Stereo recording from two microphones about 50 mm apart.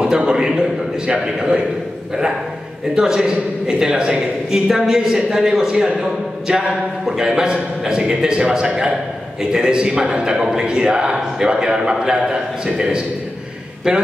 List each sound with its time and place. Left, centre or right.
0.0 s a sound: centre
0.5 s a man's voice: centre
2.9 s a man's voice: centre